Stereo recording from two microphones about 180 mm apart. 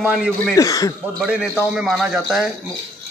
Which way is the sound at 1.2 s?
5° right (ahead or behind).